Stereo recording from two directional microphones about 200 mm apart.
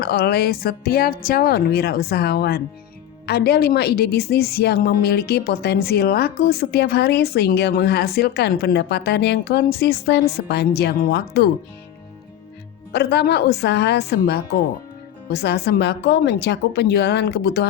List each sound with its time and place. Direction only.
0.0 s a woman's voice: 50° left (ahead or behind)
12.9 s a woman's voice: 55° left (ahead or behind)